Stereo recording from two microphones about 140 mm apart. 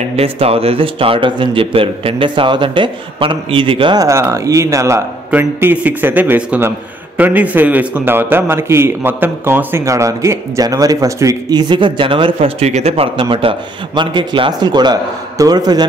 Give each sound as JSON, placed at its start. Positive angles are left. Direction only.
{"t": 0.1, "sound": "speech", "side_deg": -45}
{"t": 4.0, "sound": "a man's voice", "side_deg": -20}